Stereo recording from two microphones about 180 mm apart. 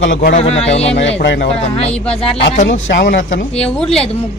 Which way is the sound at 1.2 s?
75° left (ahead or behind).